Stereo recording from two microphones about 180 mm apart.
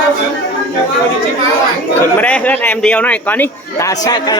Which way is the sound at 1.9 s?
10° left (ahead or behind).